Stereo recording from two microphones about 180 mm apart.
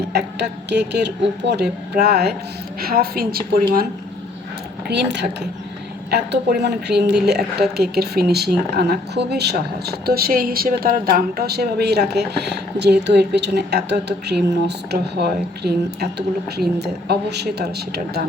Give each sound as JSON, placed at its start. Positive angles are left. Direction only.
{"t": 0.1, "sound": "speech", "side_deg": -65}
{"t": 4.9, "sound": "speech", "side_deg": -70}